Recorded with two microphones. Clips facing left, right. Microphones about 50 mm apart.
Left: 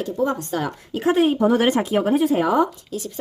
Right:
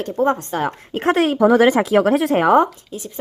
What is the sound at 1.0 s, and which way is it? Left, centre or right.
Speech, right.